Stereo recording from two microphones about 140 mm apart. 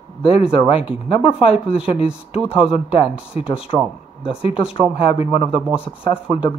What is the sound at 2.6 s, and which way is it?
Speech, 45° left (ahead or behind).